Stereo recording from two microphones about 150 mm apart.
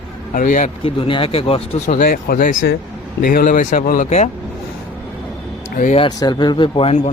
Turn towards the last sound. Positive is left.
turn(degrees=35)  # may be behind; listen again after turning